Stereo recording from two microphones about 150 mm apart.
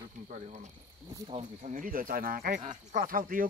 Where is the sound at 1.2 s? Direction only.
40° right (ahead or behind).